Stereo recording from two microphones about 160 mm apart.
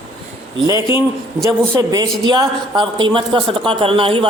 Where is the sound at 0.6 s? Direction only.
20° right (ahead or behind).